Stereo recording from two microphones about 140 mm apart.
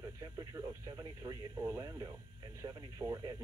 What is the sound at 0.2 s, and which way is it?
Speech, 25° right (ahead or behind).